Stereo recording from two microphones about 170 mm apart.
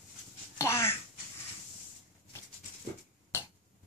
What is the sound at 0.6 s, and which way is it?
Babbling, 15° left (ahead or behind).